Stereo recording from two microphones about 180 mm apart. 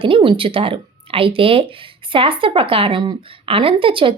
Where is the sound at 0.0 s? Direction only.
25° right (ahead or behind).